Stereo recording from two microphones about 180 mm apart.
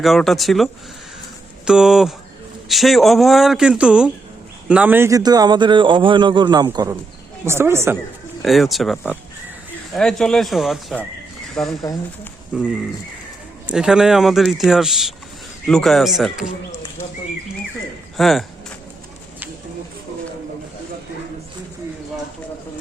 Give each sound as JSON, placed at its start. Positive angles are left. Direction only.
{"t": 0.0, "sound": "a man's voice", "side_deg": 0}
{"t": 8.4, "sound": "speech", "side_deg": 0}
{"t": 11.8, "sound": "speech", "side_deg": 20}
{"t": 12.5, "sound": "speech", "side_deg": -5}
{"t": 18.2, "sound": "speech", "side_deg": 0}